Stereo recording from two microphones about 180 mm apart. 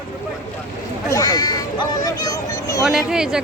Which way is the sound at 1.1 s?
20° left (ahead or behind).